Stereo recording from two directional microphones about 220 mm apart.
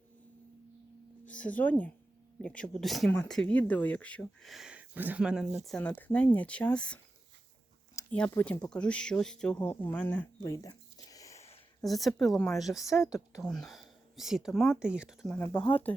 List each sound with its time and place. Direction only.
1.2 s speech: 5° left (ahead or behind)
11.4 s a sound: 25° left (ahead or behind)
11.9 s speech: centre (ahead or behind)
15.7 s speech: 5° left (ahead or behind)